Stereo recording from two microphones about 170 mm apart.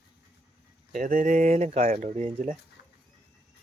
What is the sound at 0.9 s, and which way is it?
Speech, 50° right (ahead or behind).